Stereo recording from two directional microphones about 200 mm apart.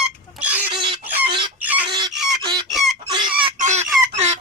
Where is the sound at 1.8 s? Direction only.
20° right (ahead or behind).